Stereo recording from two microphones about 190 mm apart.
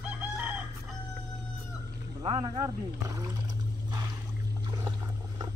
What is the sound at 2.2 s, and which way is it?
Speech, 30° right (ahead or behind).